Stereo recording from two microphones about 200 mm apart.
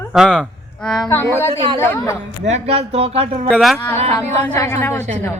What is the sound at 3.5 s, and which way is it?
Speech, centre (ahead or behind).